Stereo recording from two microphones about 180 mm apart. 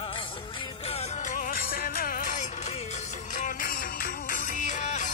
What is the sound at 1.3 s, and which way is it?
Music, 50° left (ahead or behind).